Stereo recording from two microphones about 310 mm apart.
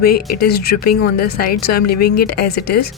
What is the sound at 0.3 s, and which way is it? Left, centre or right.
Speech, left.